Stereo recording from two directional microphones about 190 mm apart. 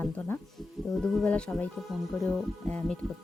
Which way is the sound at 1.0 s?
5° left (ahead or behind).